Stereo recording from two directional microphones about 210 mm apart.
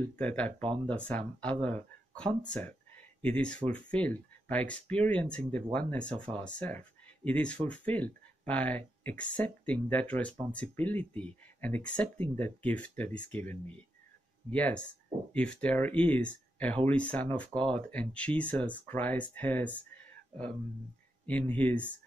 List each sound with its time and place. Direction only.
0.1 s speech: 5° left (ahead or behind)
21.3 s speech: 5° left (ahead or behind)